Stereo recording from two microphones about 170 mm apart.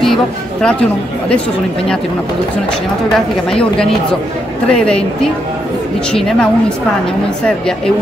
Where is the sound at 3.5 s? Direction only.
5° left (ahead or behind).